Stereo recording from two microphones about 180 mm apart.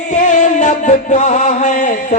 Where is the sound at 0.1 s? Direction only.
45° left (ahead or behind).